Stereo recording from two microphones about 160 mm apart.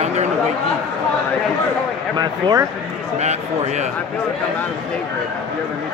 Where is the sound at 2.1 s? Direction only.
25° right (ahead or behind).